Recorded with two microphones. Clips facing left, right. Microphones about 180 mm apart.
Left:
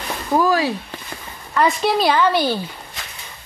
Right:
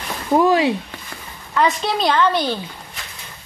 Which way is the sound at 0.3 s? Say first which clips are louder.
Right 3 dB; 25° right (ahead or behind).